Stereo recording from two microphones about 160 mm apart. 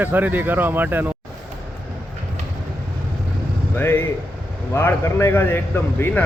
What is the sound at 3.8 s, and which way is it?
Speech, 15° left (ahead or behind).